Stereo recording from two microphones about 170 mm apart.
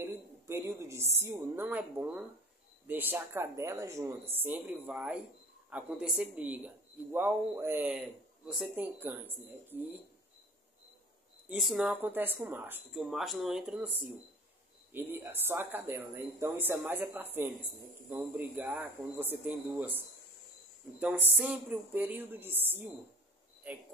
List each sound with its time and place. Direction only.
0.0 s a sound: 15° right (ahead or behind)
1.2 s speech: 15° right (ahead or behind)
11.4 s speech: 5° right (ahead or behind)
12.9 s speech: centre (ahead or behind)
21.0 s speech: 10° right (ahead or behind)